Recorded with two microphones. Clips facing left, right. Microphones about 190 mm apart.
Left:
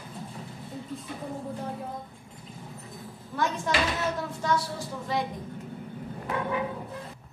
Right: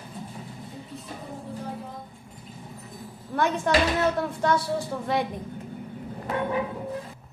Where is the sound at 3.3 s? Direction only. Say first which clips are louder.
Right 5 dB; 60° right (ahead or behind).